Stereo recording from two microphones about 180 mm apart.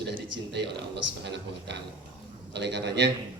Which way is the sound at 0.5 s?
70° right (ahead or behind).